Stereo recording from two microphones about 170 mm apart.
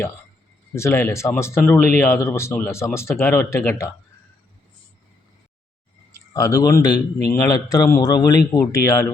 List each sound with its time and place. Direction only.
0.7 s speech: 15° left (ahead or behind)
6.3 s a man's voice: 20° left (ahead or behind)